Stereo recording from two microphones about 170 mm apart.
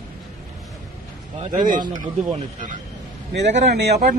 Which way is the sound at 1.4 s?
50° right (ahead or behind).